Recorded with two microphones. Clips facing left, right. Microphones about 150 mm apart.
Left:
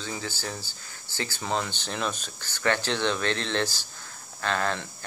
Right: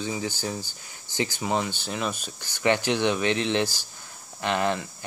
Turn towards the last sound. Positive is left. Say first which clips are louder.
# right 3 dB
turn(degrees=-15)  # may be behind; listen again after turning